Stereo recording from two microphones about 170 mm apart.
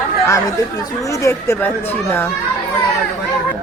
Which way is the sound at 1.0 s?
20° left (ahead or behind).